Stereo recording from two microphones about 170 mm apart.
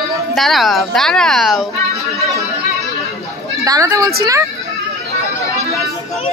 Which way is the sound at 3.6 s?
20° right (ahead or behind).